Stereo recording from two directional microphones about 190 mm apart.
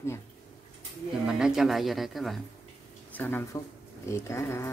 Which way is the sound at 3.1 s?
10° left (ahead or behind).